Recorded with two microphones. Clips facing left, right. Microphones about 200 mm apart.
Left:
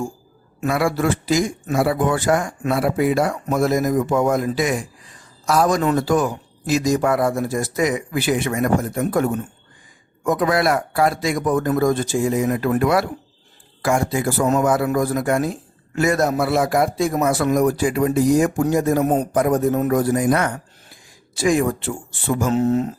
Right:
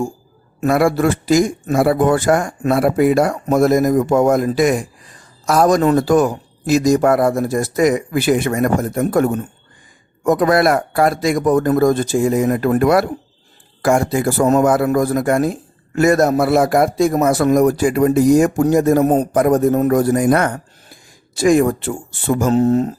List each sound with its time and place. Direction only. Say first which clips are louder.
0.6 s a man's voice: right 5 dB; 45° right (ahead or behind)